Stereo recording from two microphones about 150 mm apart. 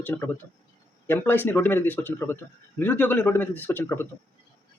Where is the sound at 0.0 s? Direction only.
15° left (ahead or behind).